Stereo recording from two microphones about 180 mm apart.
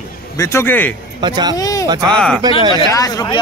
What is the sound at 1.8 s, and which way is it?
Speech, 20° right (ahead or behind).